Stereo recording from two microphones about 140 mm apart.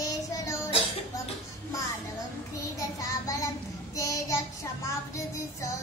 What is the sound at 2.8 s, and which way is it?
Child singing, 25° left (ahead or behind).